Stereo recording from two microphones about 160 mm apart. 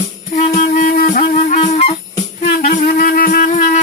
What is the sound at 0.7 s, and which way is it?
Music, 60° left (ahead or behind).